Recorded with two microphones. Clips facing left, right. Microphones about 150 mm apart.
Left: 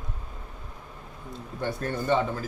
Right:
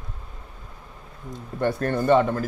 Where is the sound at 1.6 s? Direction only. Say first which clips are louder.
Right 7 dB; 60° right (ahead or behind).